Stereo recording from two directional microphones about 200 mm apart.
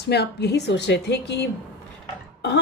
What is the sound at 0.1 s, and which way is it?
Speech, 55° left (ahead or behind).